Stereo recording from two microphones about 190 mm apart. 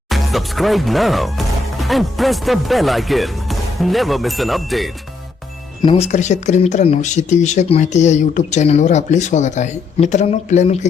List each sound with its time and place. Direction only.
0.1 s speech: centre (ahead or behind)
5.8 s speech: 30° left (ahead or behind)